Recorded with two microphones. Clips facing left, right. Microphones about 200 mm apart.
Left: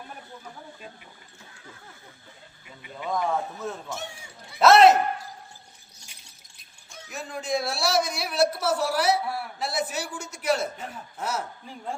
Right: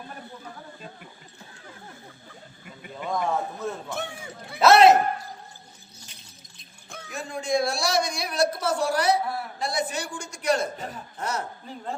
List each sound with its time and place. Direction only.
3.0 s a man's voice: centre (ahead or behind)
3.8 s a sound: 55° right (ahead or behind)
4.6 s a man's voice: centre (ahead or behind)
7.1 s a man's voice: centre (ahead or behind)